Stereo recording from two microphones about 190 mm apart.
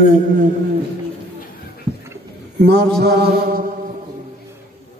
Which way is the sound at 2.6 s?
60° right (ahead or behind).